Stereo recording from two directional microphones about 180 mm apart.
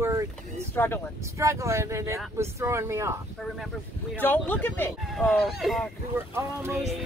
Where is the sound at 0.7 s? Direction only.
10° left (ahead or behind).